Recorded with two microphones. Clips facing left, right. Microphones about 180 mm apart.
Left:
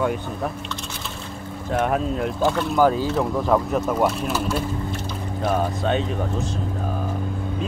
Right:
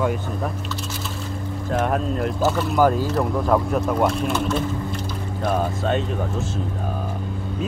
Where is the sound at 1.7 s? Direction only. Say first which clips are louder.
Left 1 dB; centre (ahead or behind).